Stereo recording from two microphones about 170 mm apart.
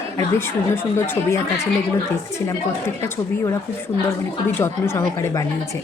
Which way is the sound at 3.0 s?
15° left (ahead or behind).